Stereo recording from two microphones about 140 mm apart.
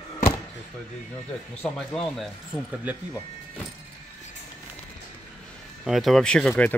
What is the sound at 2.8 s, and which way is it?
Speech, 10° right (ahead or behind).